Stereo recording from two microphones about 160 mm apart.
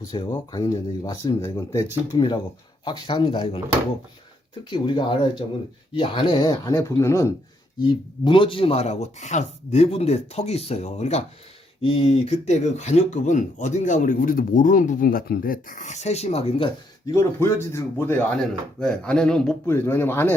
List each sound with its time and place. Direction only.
0.1 s speech: 30° left (ahead or behind)
4.7 s speech: 30° left (ahead or behind)
8.2 s speech: 30° left (ahead or behind)
17.1 s speech: 15° left (ahead or behind)